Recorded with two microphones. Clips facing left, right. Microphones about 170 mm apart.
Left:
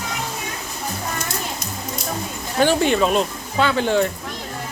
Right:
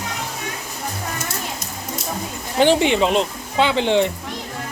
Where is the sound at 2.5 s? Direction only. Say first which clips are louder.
Right 1 dB; 20° right (ahead or behind).